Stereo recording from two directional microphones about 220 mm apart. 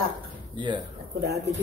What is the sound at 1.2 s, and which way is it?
Speech, 50° right (ahead or behind).